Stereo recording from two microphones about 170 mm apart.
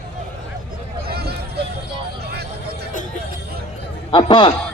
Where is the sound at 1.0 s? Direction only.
65° right (ahead or behind).